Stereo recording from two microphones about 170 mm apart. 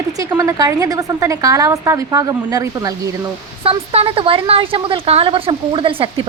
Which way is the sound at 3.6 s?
35° right (ahead or behind).